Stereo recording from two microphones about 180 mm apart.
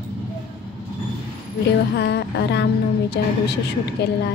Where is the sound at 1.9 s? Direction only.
70° left (ahead or behind).